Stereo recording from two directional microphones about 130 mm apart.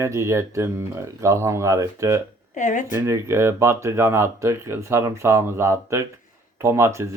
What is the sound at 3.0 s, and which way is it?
Speech, 20° right (ahead or behind).